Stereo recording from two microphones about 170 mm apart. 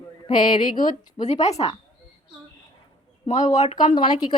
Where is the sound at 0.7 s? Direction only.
25° left (ahead or behind).